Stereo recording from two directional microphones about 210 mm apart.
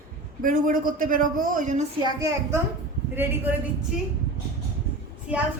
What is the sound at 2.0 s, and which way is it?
A woman's voice, 15° right (ahead or behind).